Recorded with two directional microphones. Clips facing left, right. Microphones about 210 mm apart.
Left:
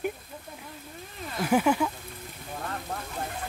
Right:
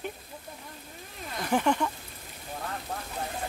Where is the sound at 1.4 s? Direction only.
5° left (ahead or behind).